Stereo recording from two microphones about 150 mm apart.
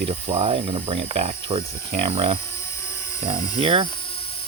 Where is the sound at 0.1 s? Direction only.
45° right (ahead or behind).